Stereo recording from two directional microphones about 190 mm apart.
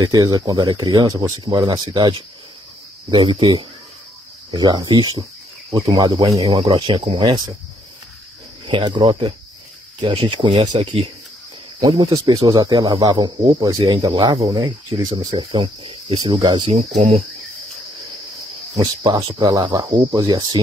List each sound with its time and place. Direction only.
0.0 s speech: 20° right (ahead or behind)
8.6 s speech: 25° right (ahead or behind)
16.9 s cricket: 40° right (ahead or behind)
18.8 s speech: 20° right (ahead or behind)